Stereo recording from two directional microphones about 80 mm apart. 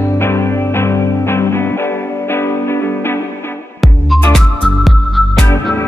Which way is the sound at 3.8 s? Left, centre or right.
Centre.